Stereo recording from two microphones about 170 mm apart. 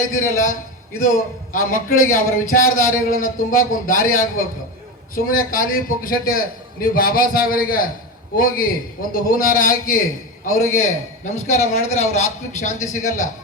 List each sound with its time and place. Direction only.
0.2 s a man's voice: 50° left (ahead or behind)
1.5 s a man's voice: 55° left (ahead or behind)